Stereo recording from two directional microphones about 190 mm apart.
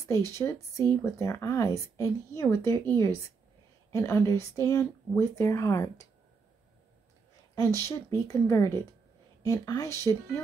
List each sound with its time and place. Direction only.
0.0 s speech: 15° left (ahead or behind)
3.9 s speech: 15° left (ahead or behind)
7.5 s speech: 15° left (ahead or behind)